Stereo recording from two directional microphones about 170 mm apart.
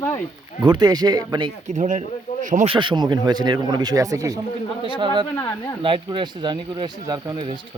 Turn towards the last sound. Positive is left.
turn(degrees=-25)  # may be behind; listen again after turning